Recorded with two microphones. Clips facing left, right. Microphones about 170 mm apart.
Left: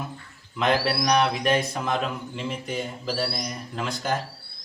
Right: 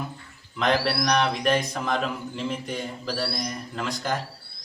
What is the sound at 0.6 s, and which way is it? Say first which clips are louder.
A man's voice: even; 5° left (ahead or behind).